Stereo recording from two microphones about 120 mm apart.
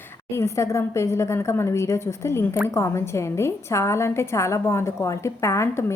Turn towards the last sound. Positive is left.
turn(degrees=20)  # may be behind; listen again after turning